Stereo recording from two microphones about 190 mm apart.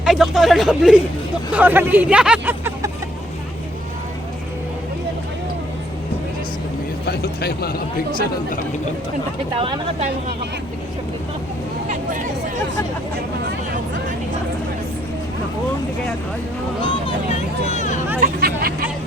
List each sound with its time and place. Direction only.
0.0 s speech: centre (ahead or behind)
7.0 s speech: 60° left (ahead or behind)
9.6 s speech: 30° right (ahead or behind)
16.8 s speech: 30° left (ahead or behind)
18.2 s speech: 50° right (ahead or behind)